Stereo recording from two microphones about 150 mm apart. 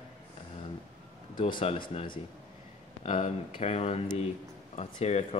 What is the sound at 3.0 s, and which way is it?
Speech, 45° left (ahead or behind).